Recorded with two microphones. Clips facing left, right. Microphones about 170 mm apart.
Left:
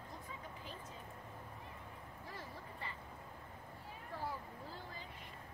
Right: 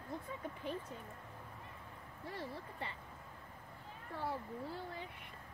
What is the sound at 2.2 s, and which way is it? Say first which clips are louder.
Speech: right 7 dB; 70° right (ahead or behind).